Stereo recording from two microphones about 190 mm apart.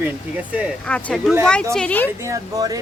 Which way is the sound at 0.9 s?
5° left (ahead or behind).